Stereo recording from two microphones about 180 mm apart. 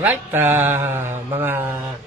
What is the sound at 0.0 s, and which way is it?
Speech, 10° right (ahead or behind).